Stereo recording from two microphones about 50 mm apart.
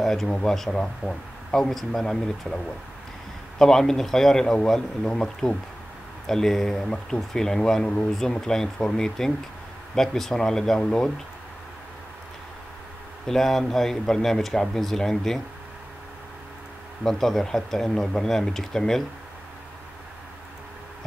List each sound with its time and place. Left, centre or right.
0.0 s a sound: centre
0.3 s speech: centre
8.1 s speech: centre
13.3 s speech: centre
17.0 s speech: centre